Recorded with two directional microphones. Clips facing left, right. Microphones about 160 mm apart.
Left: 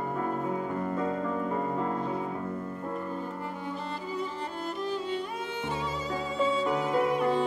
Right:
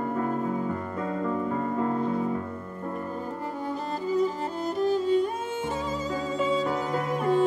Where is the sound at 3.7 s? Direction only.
40° right (ahead or behind).